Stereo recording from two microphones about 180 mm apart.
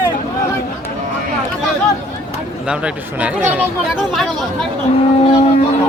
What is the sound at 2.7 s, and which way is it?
Speech, 5° right (ahead or behind).